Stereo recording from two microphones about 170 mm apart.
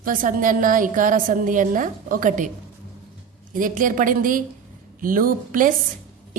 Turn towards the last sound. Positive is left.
turn(degrees=-55)  # may be behind; listen again after turning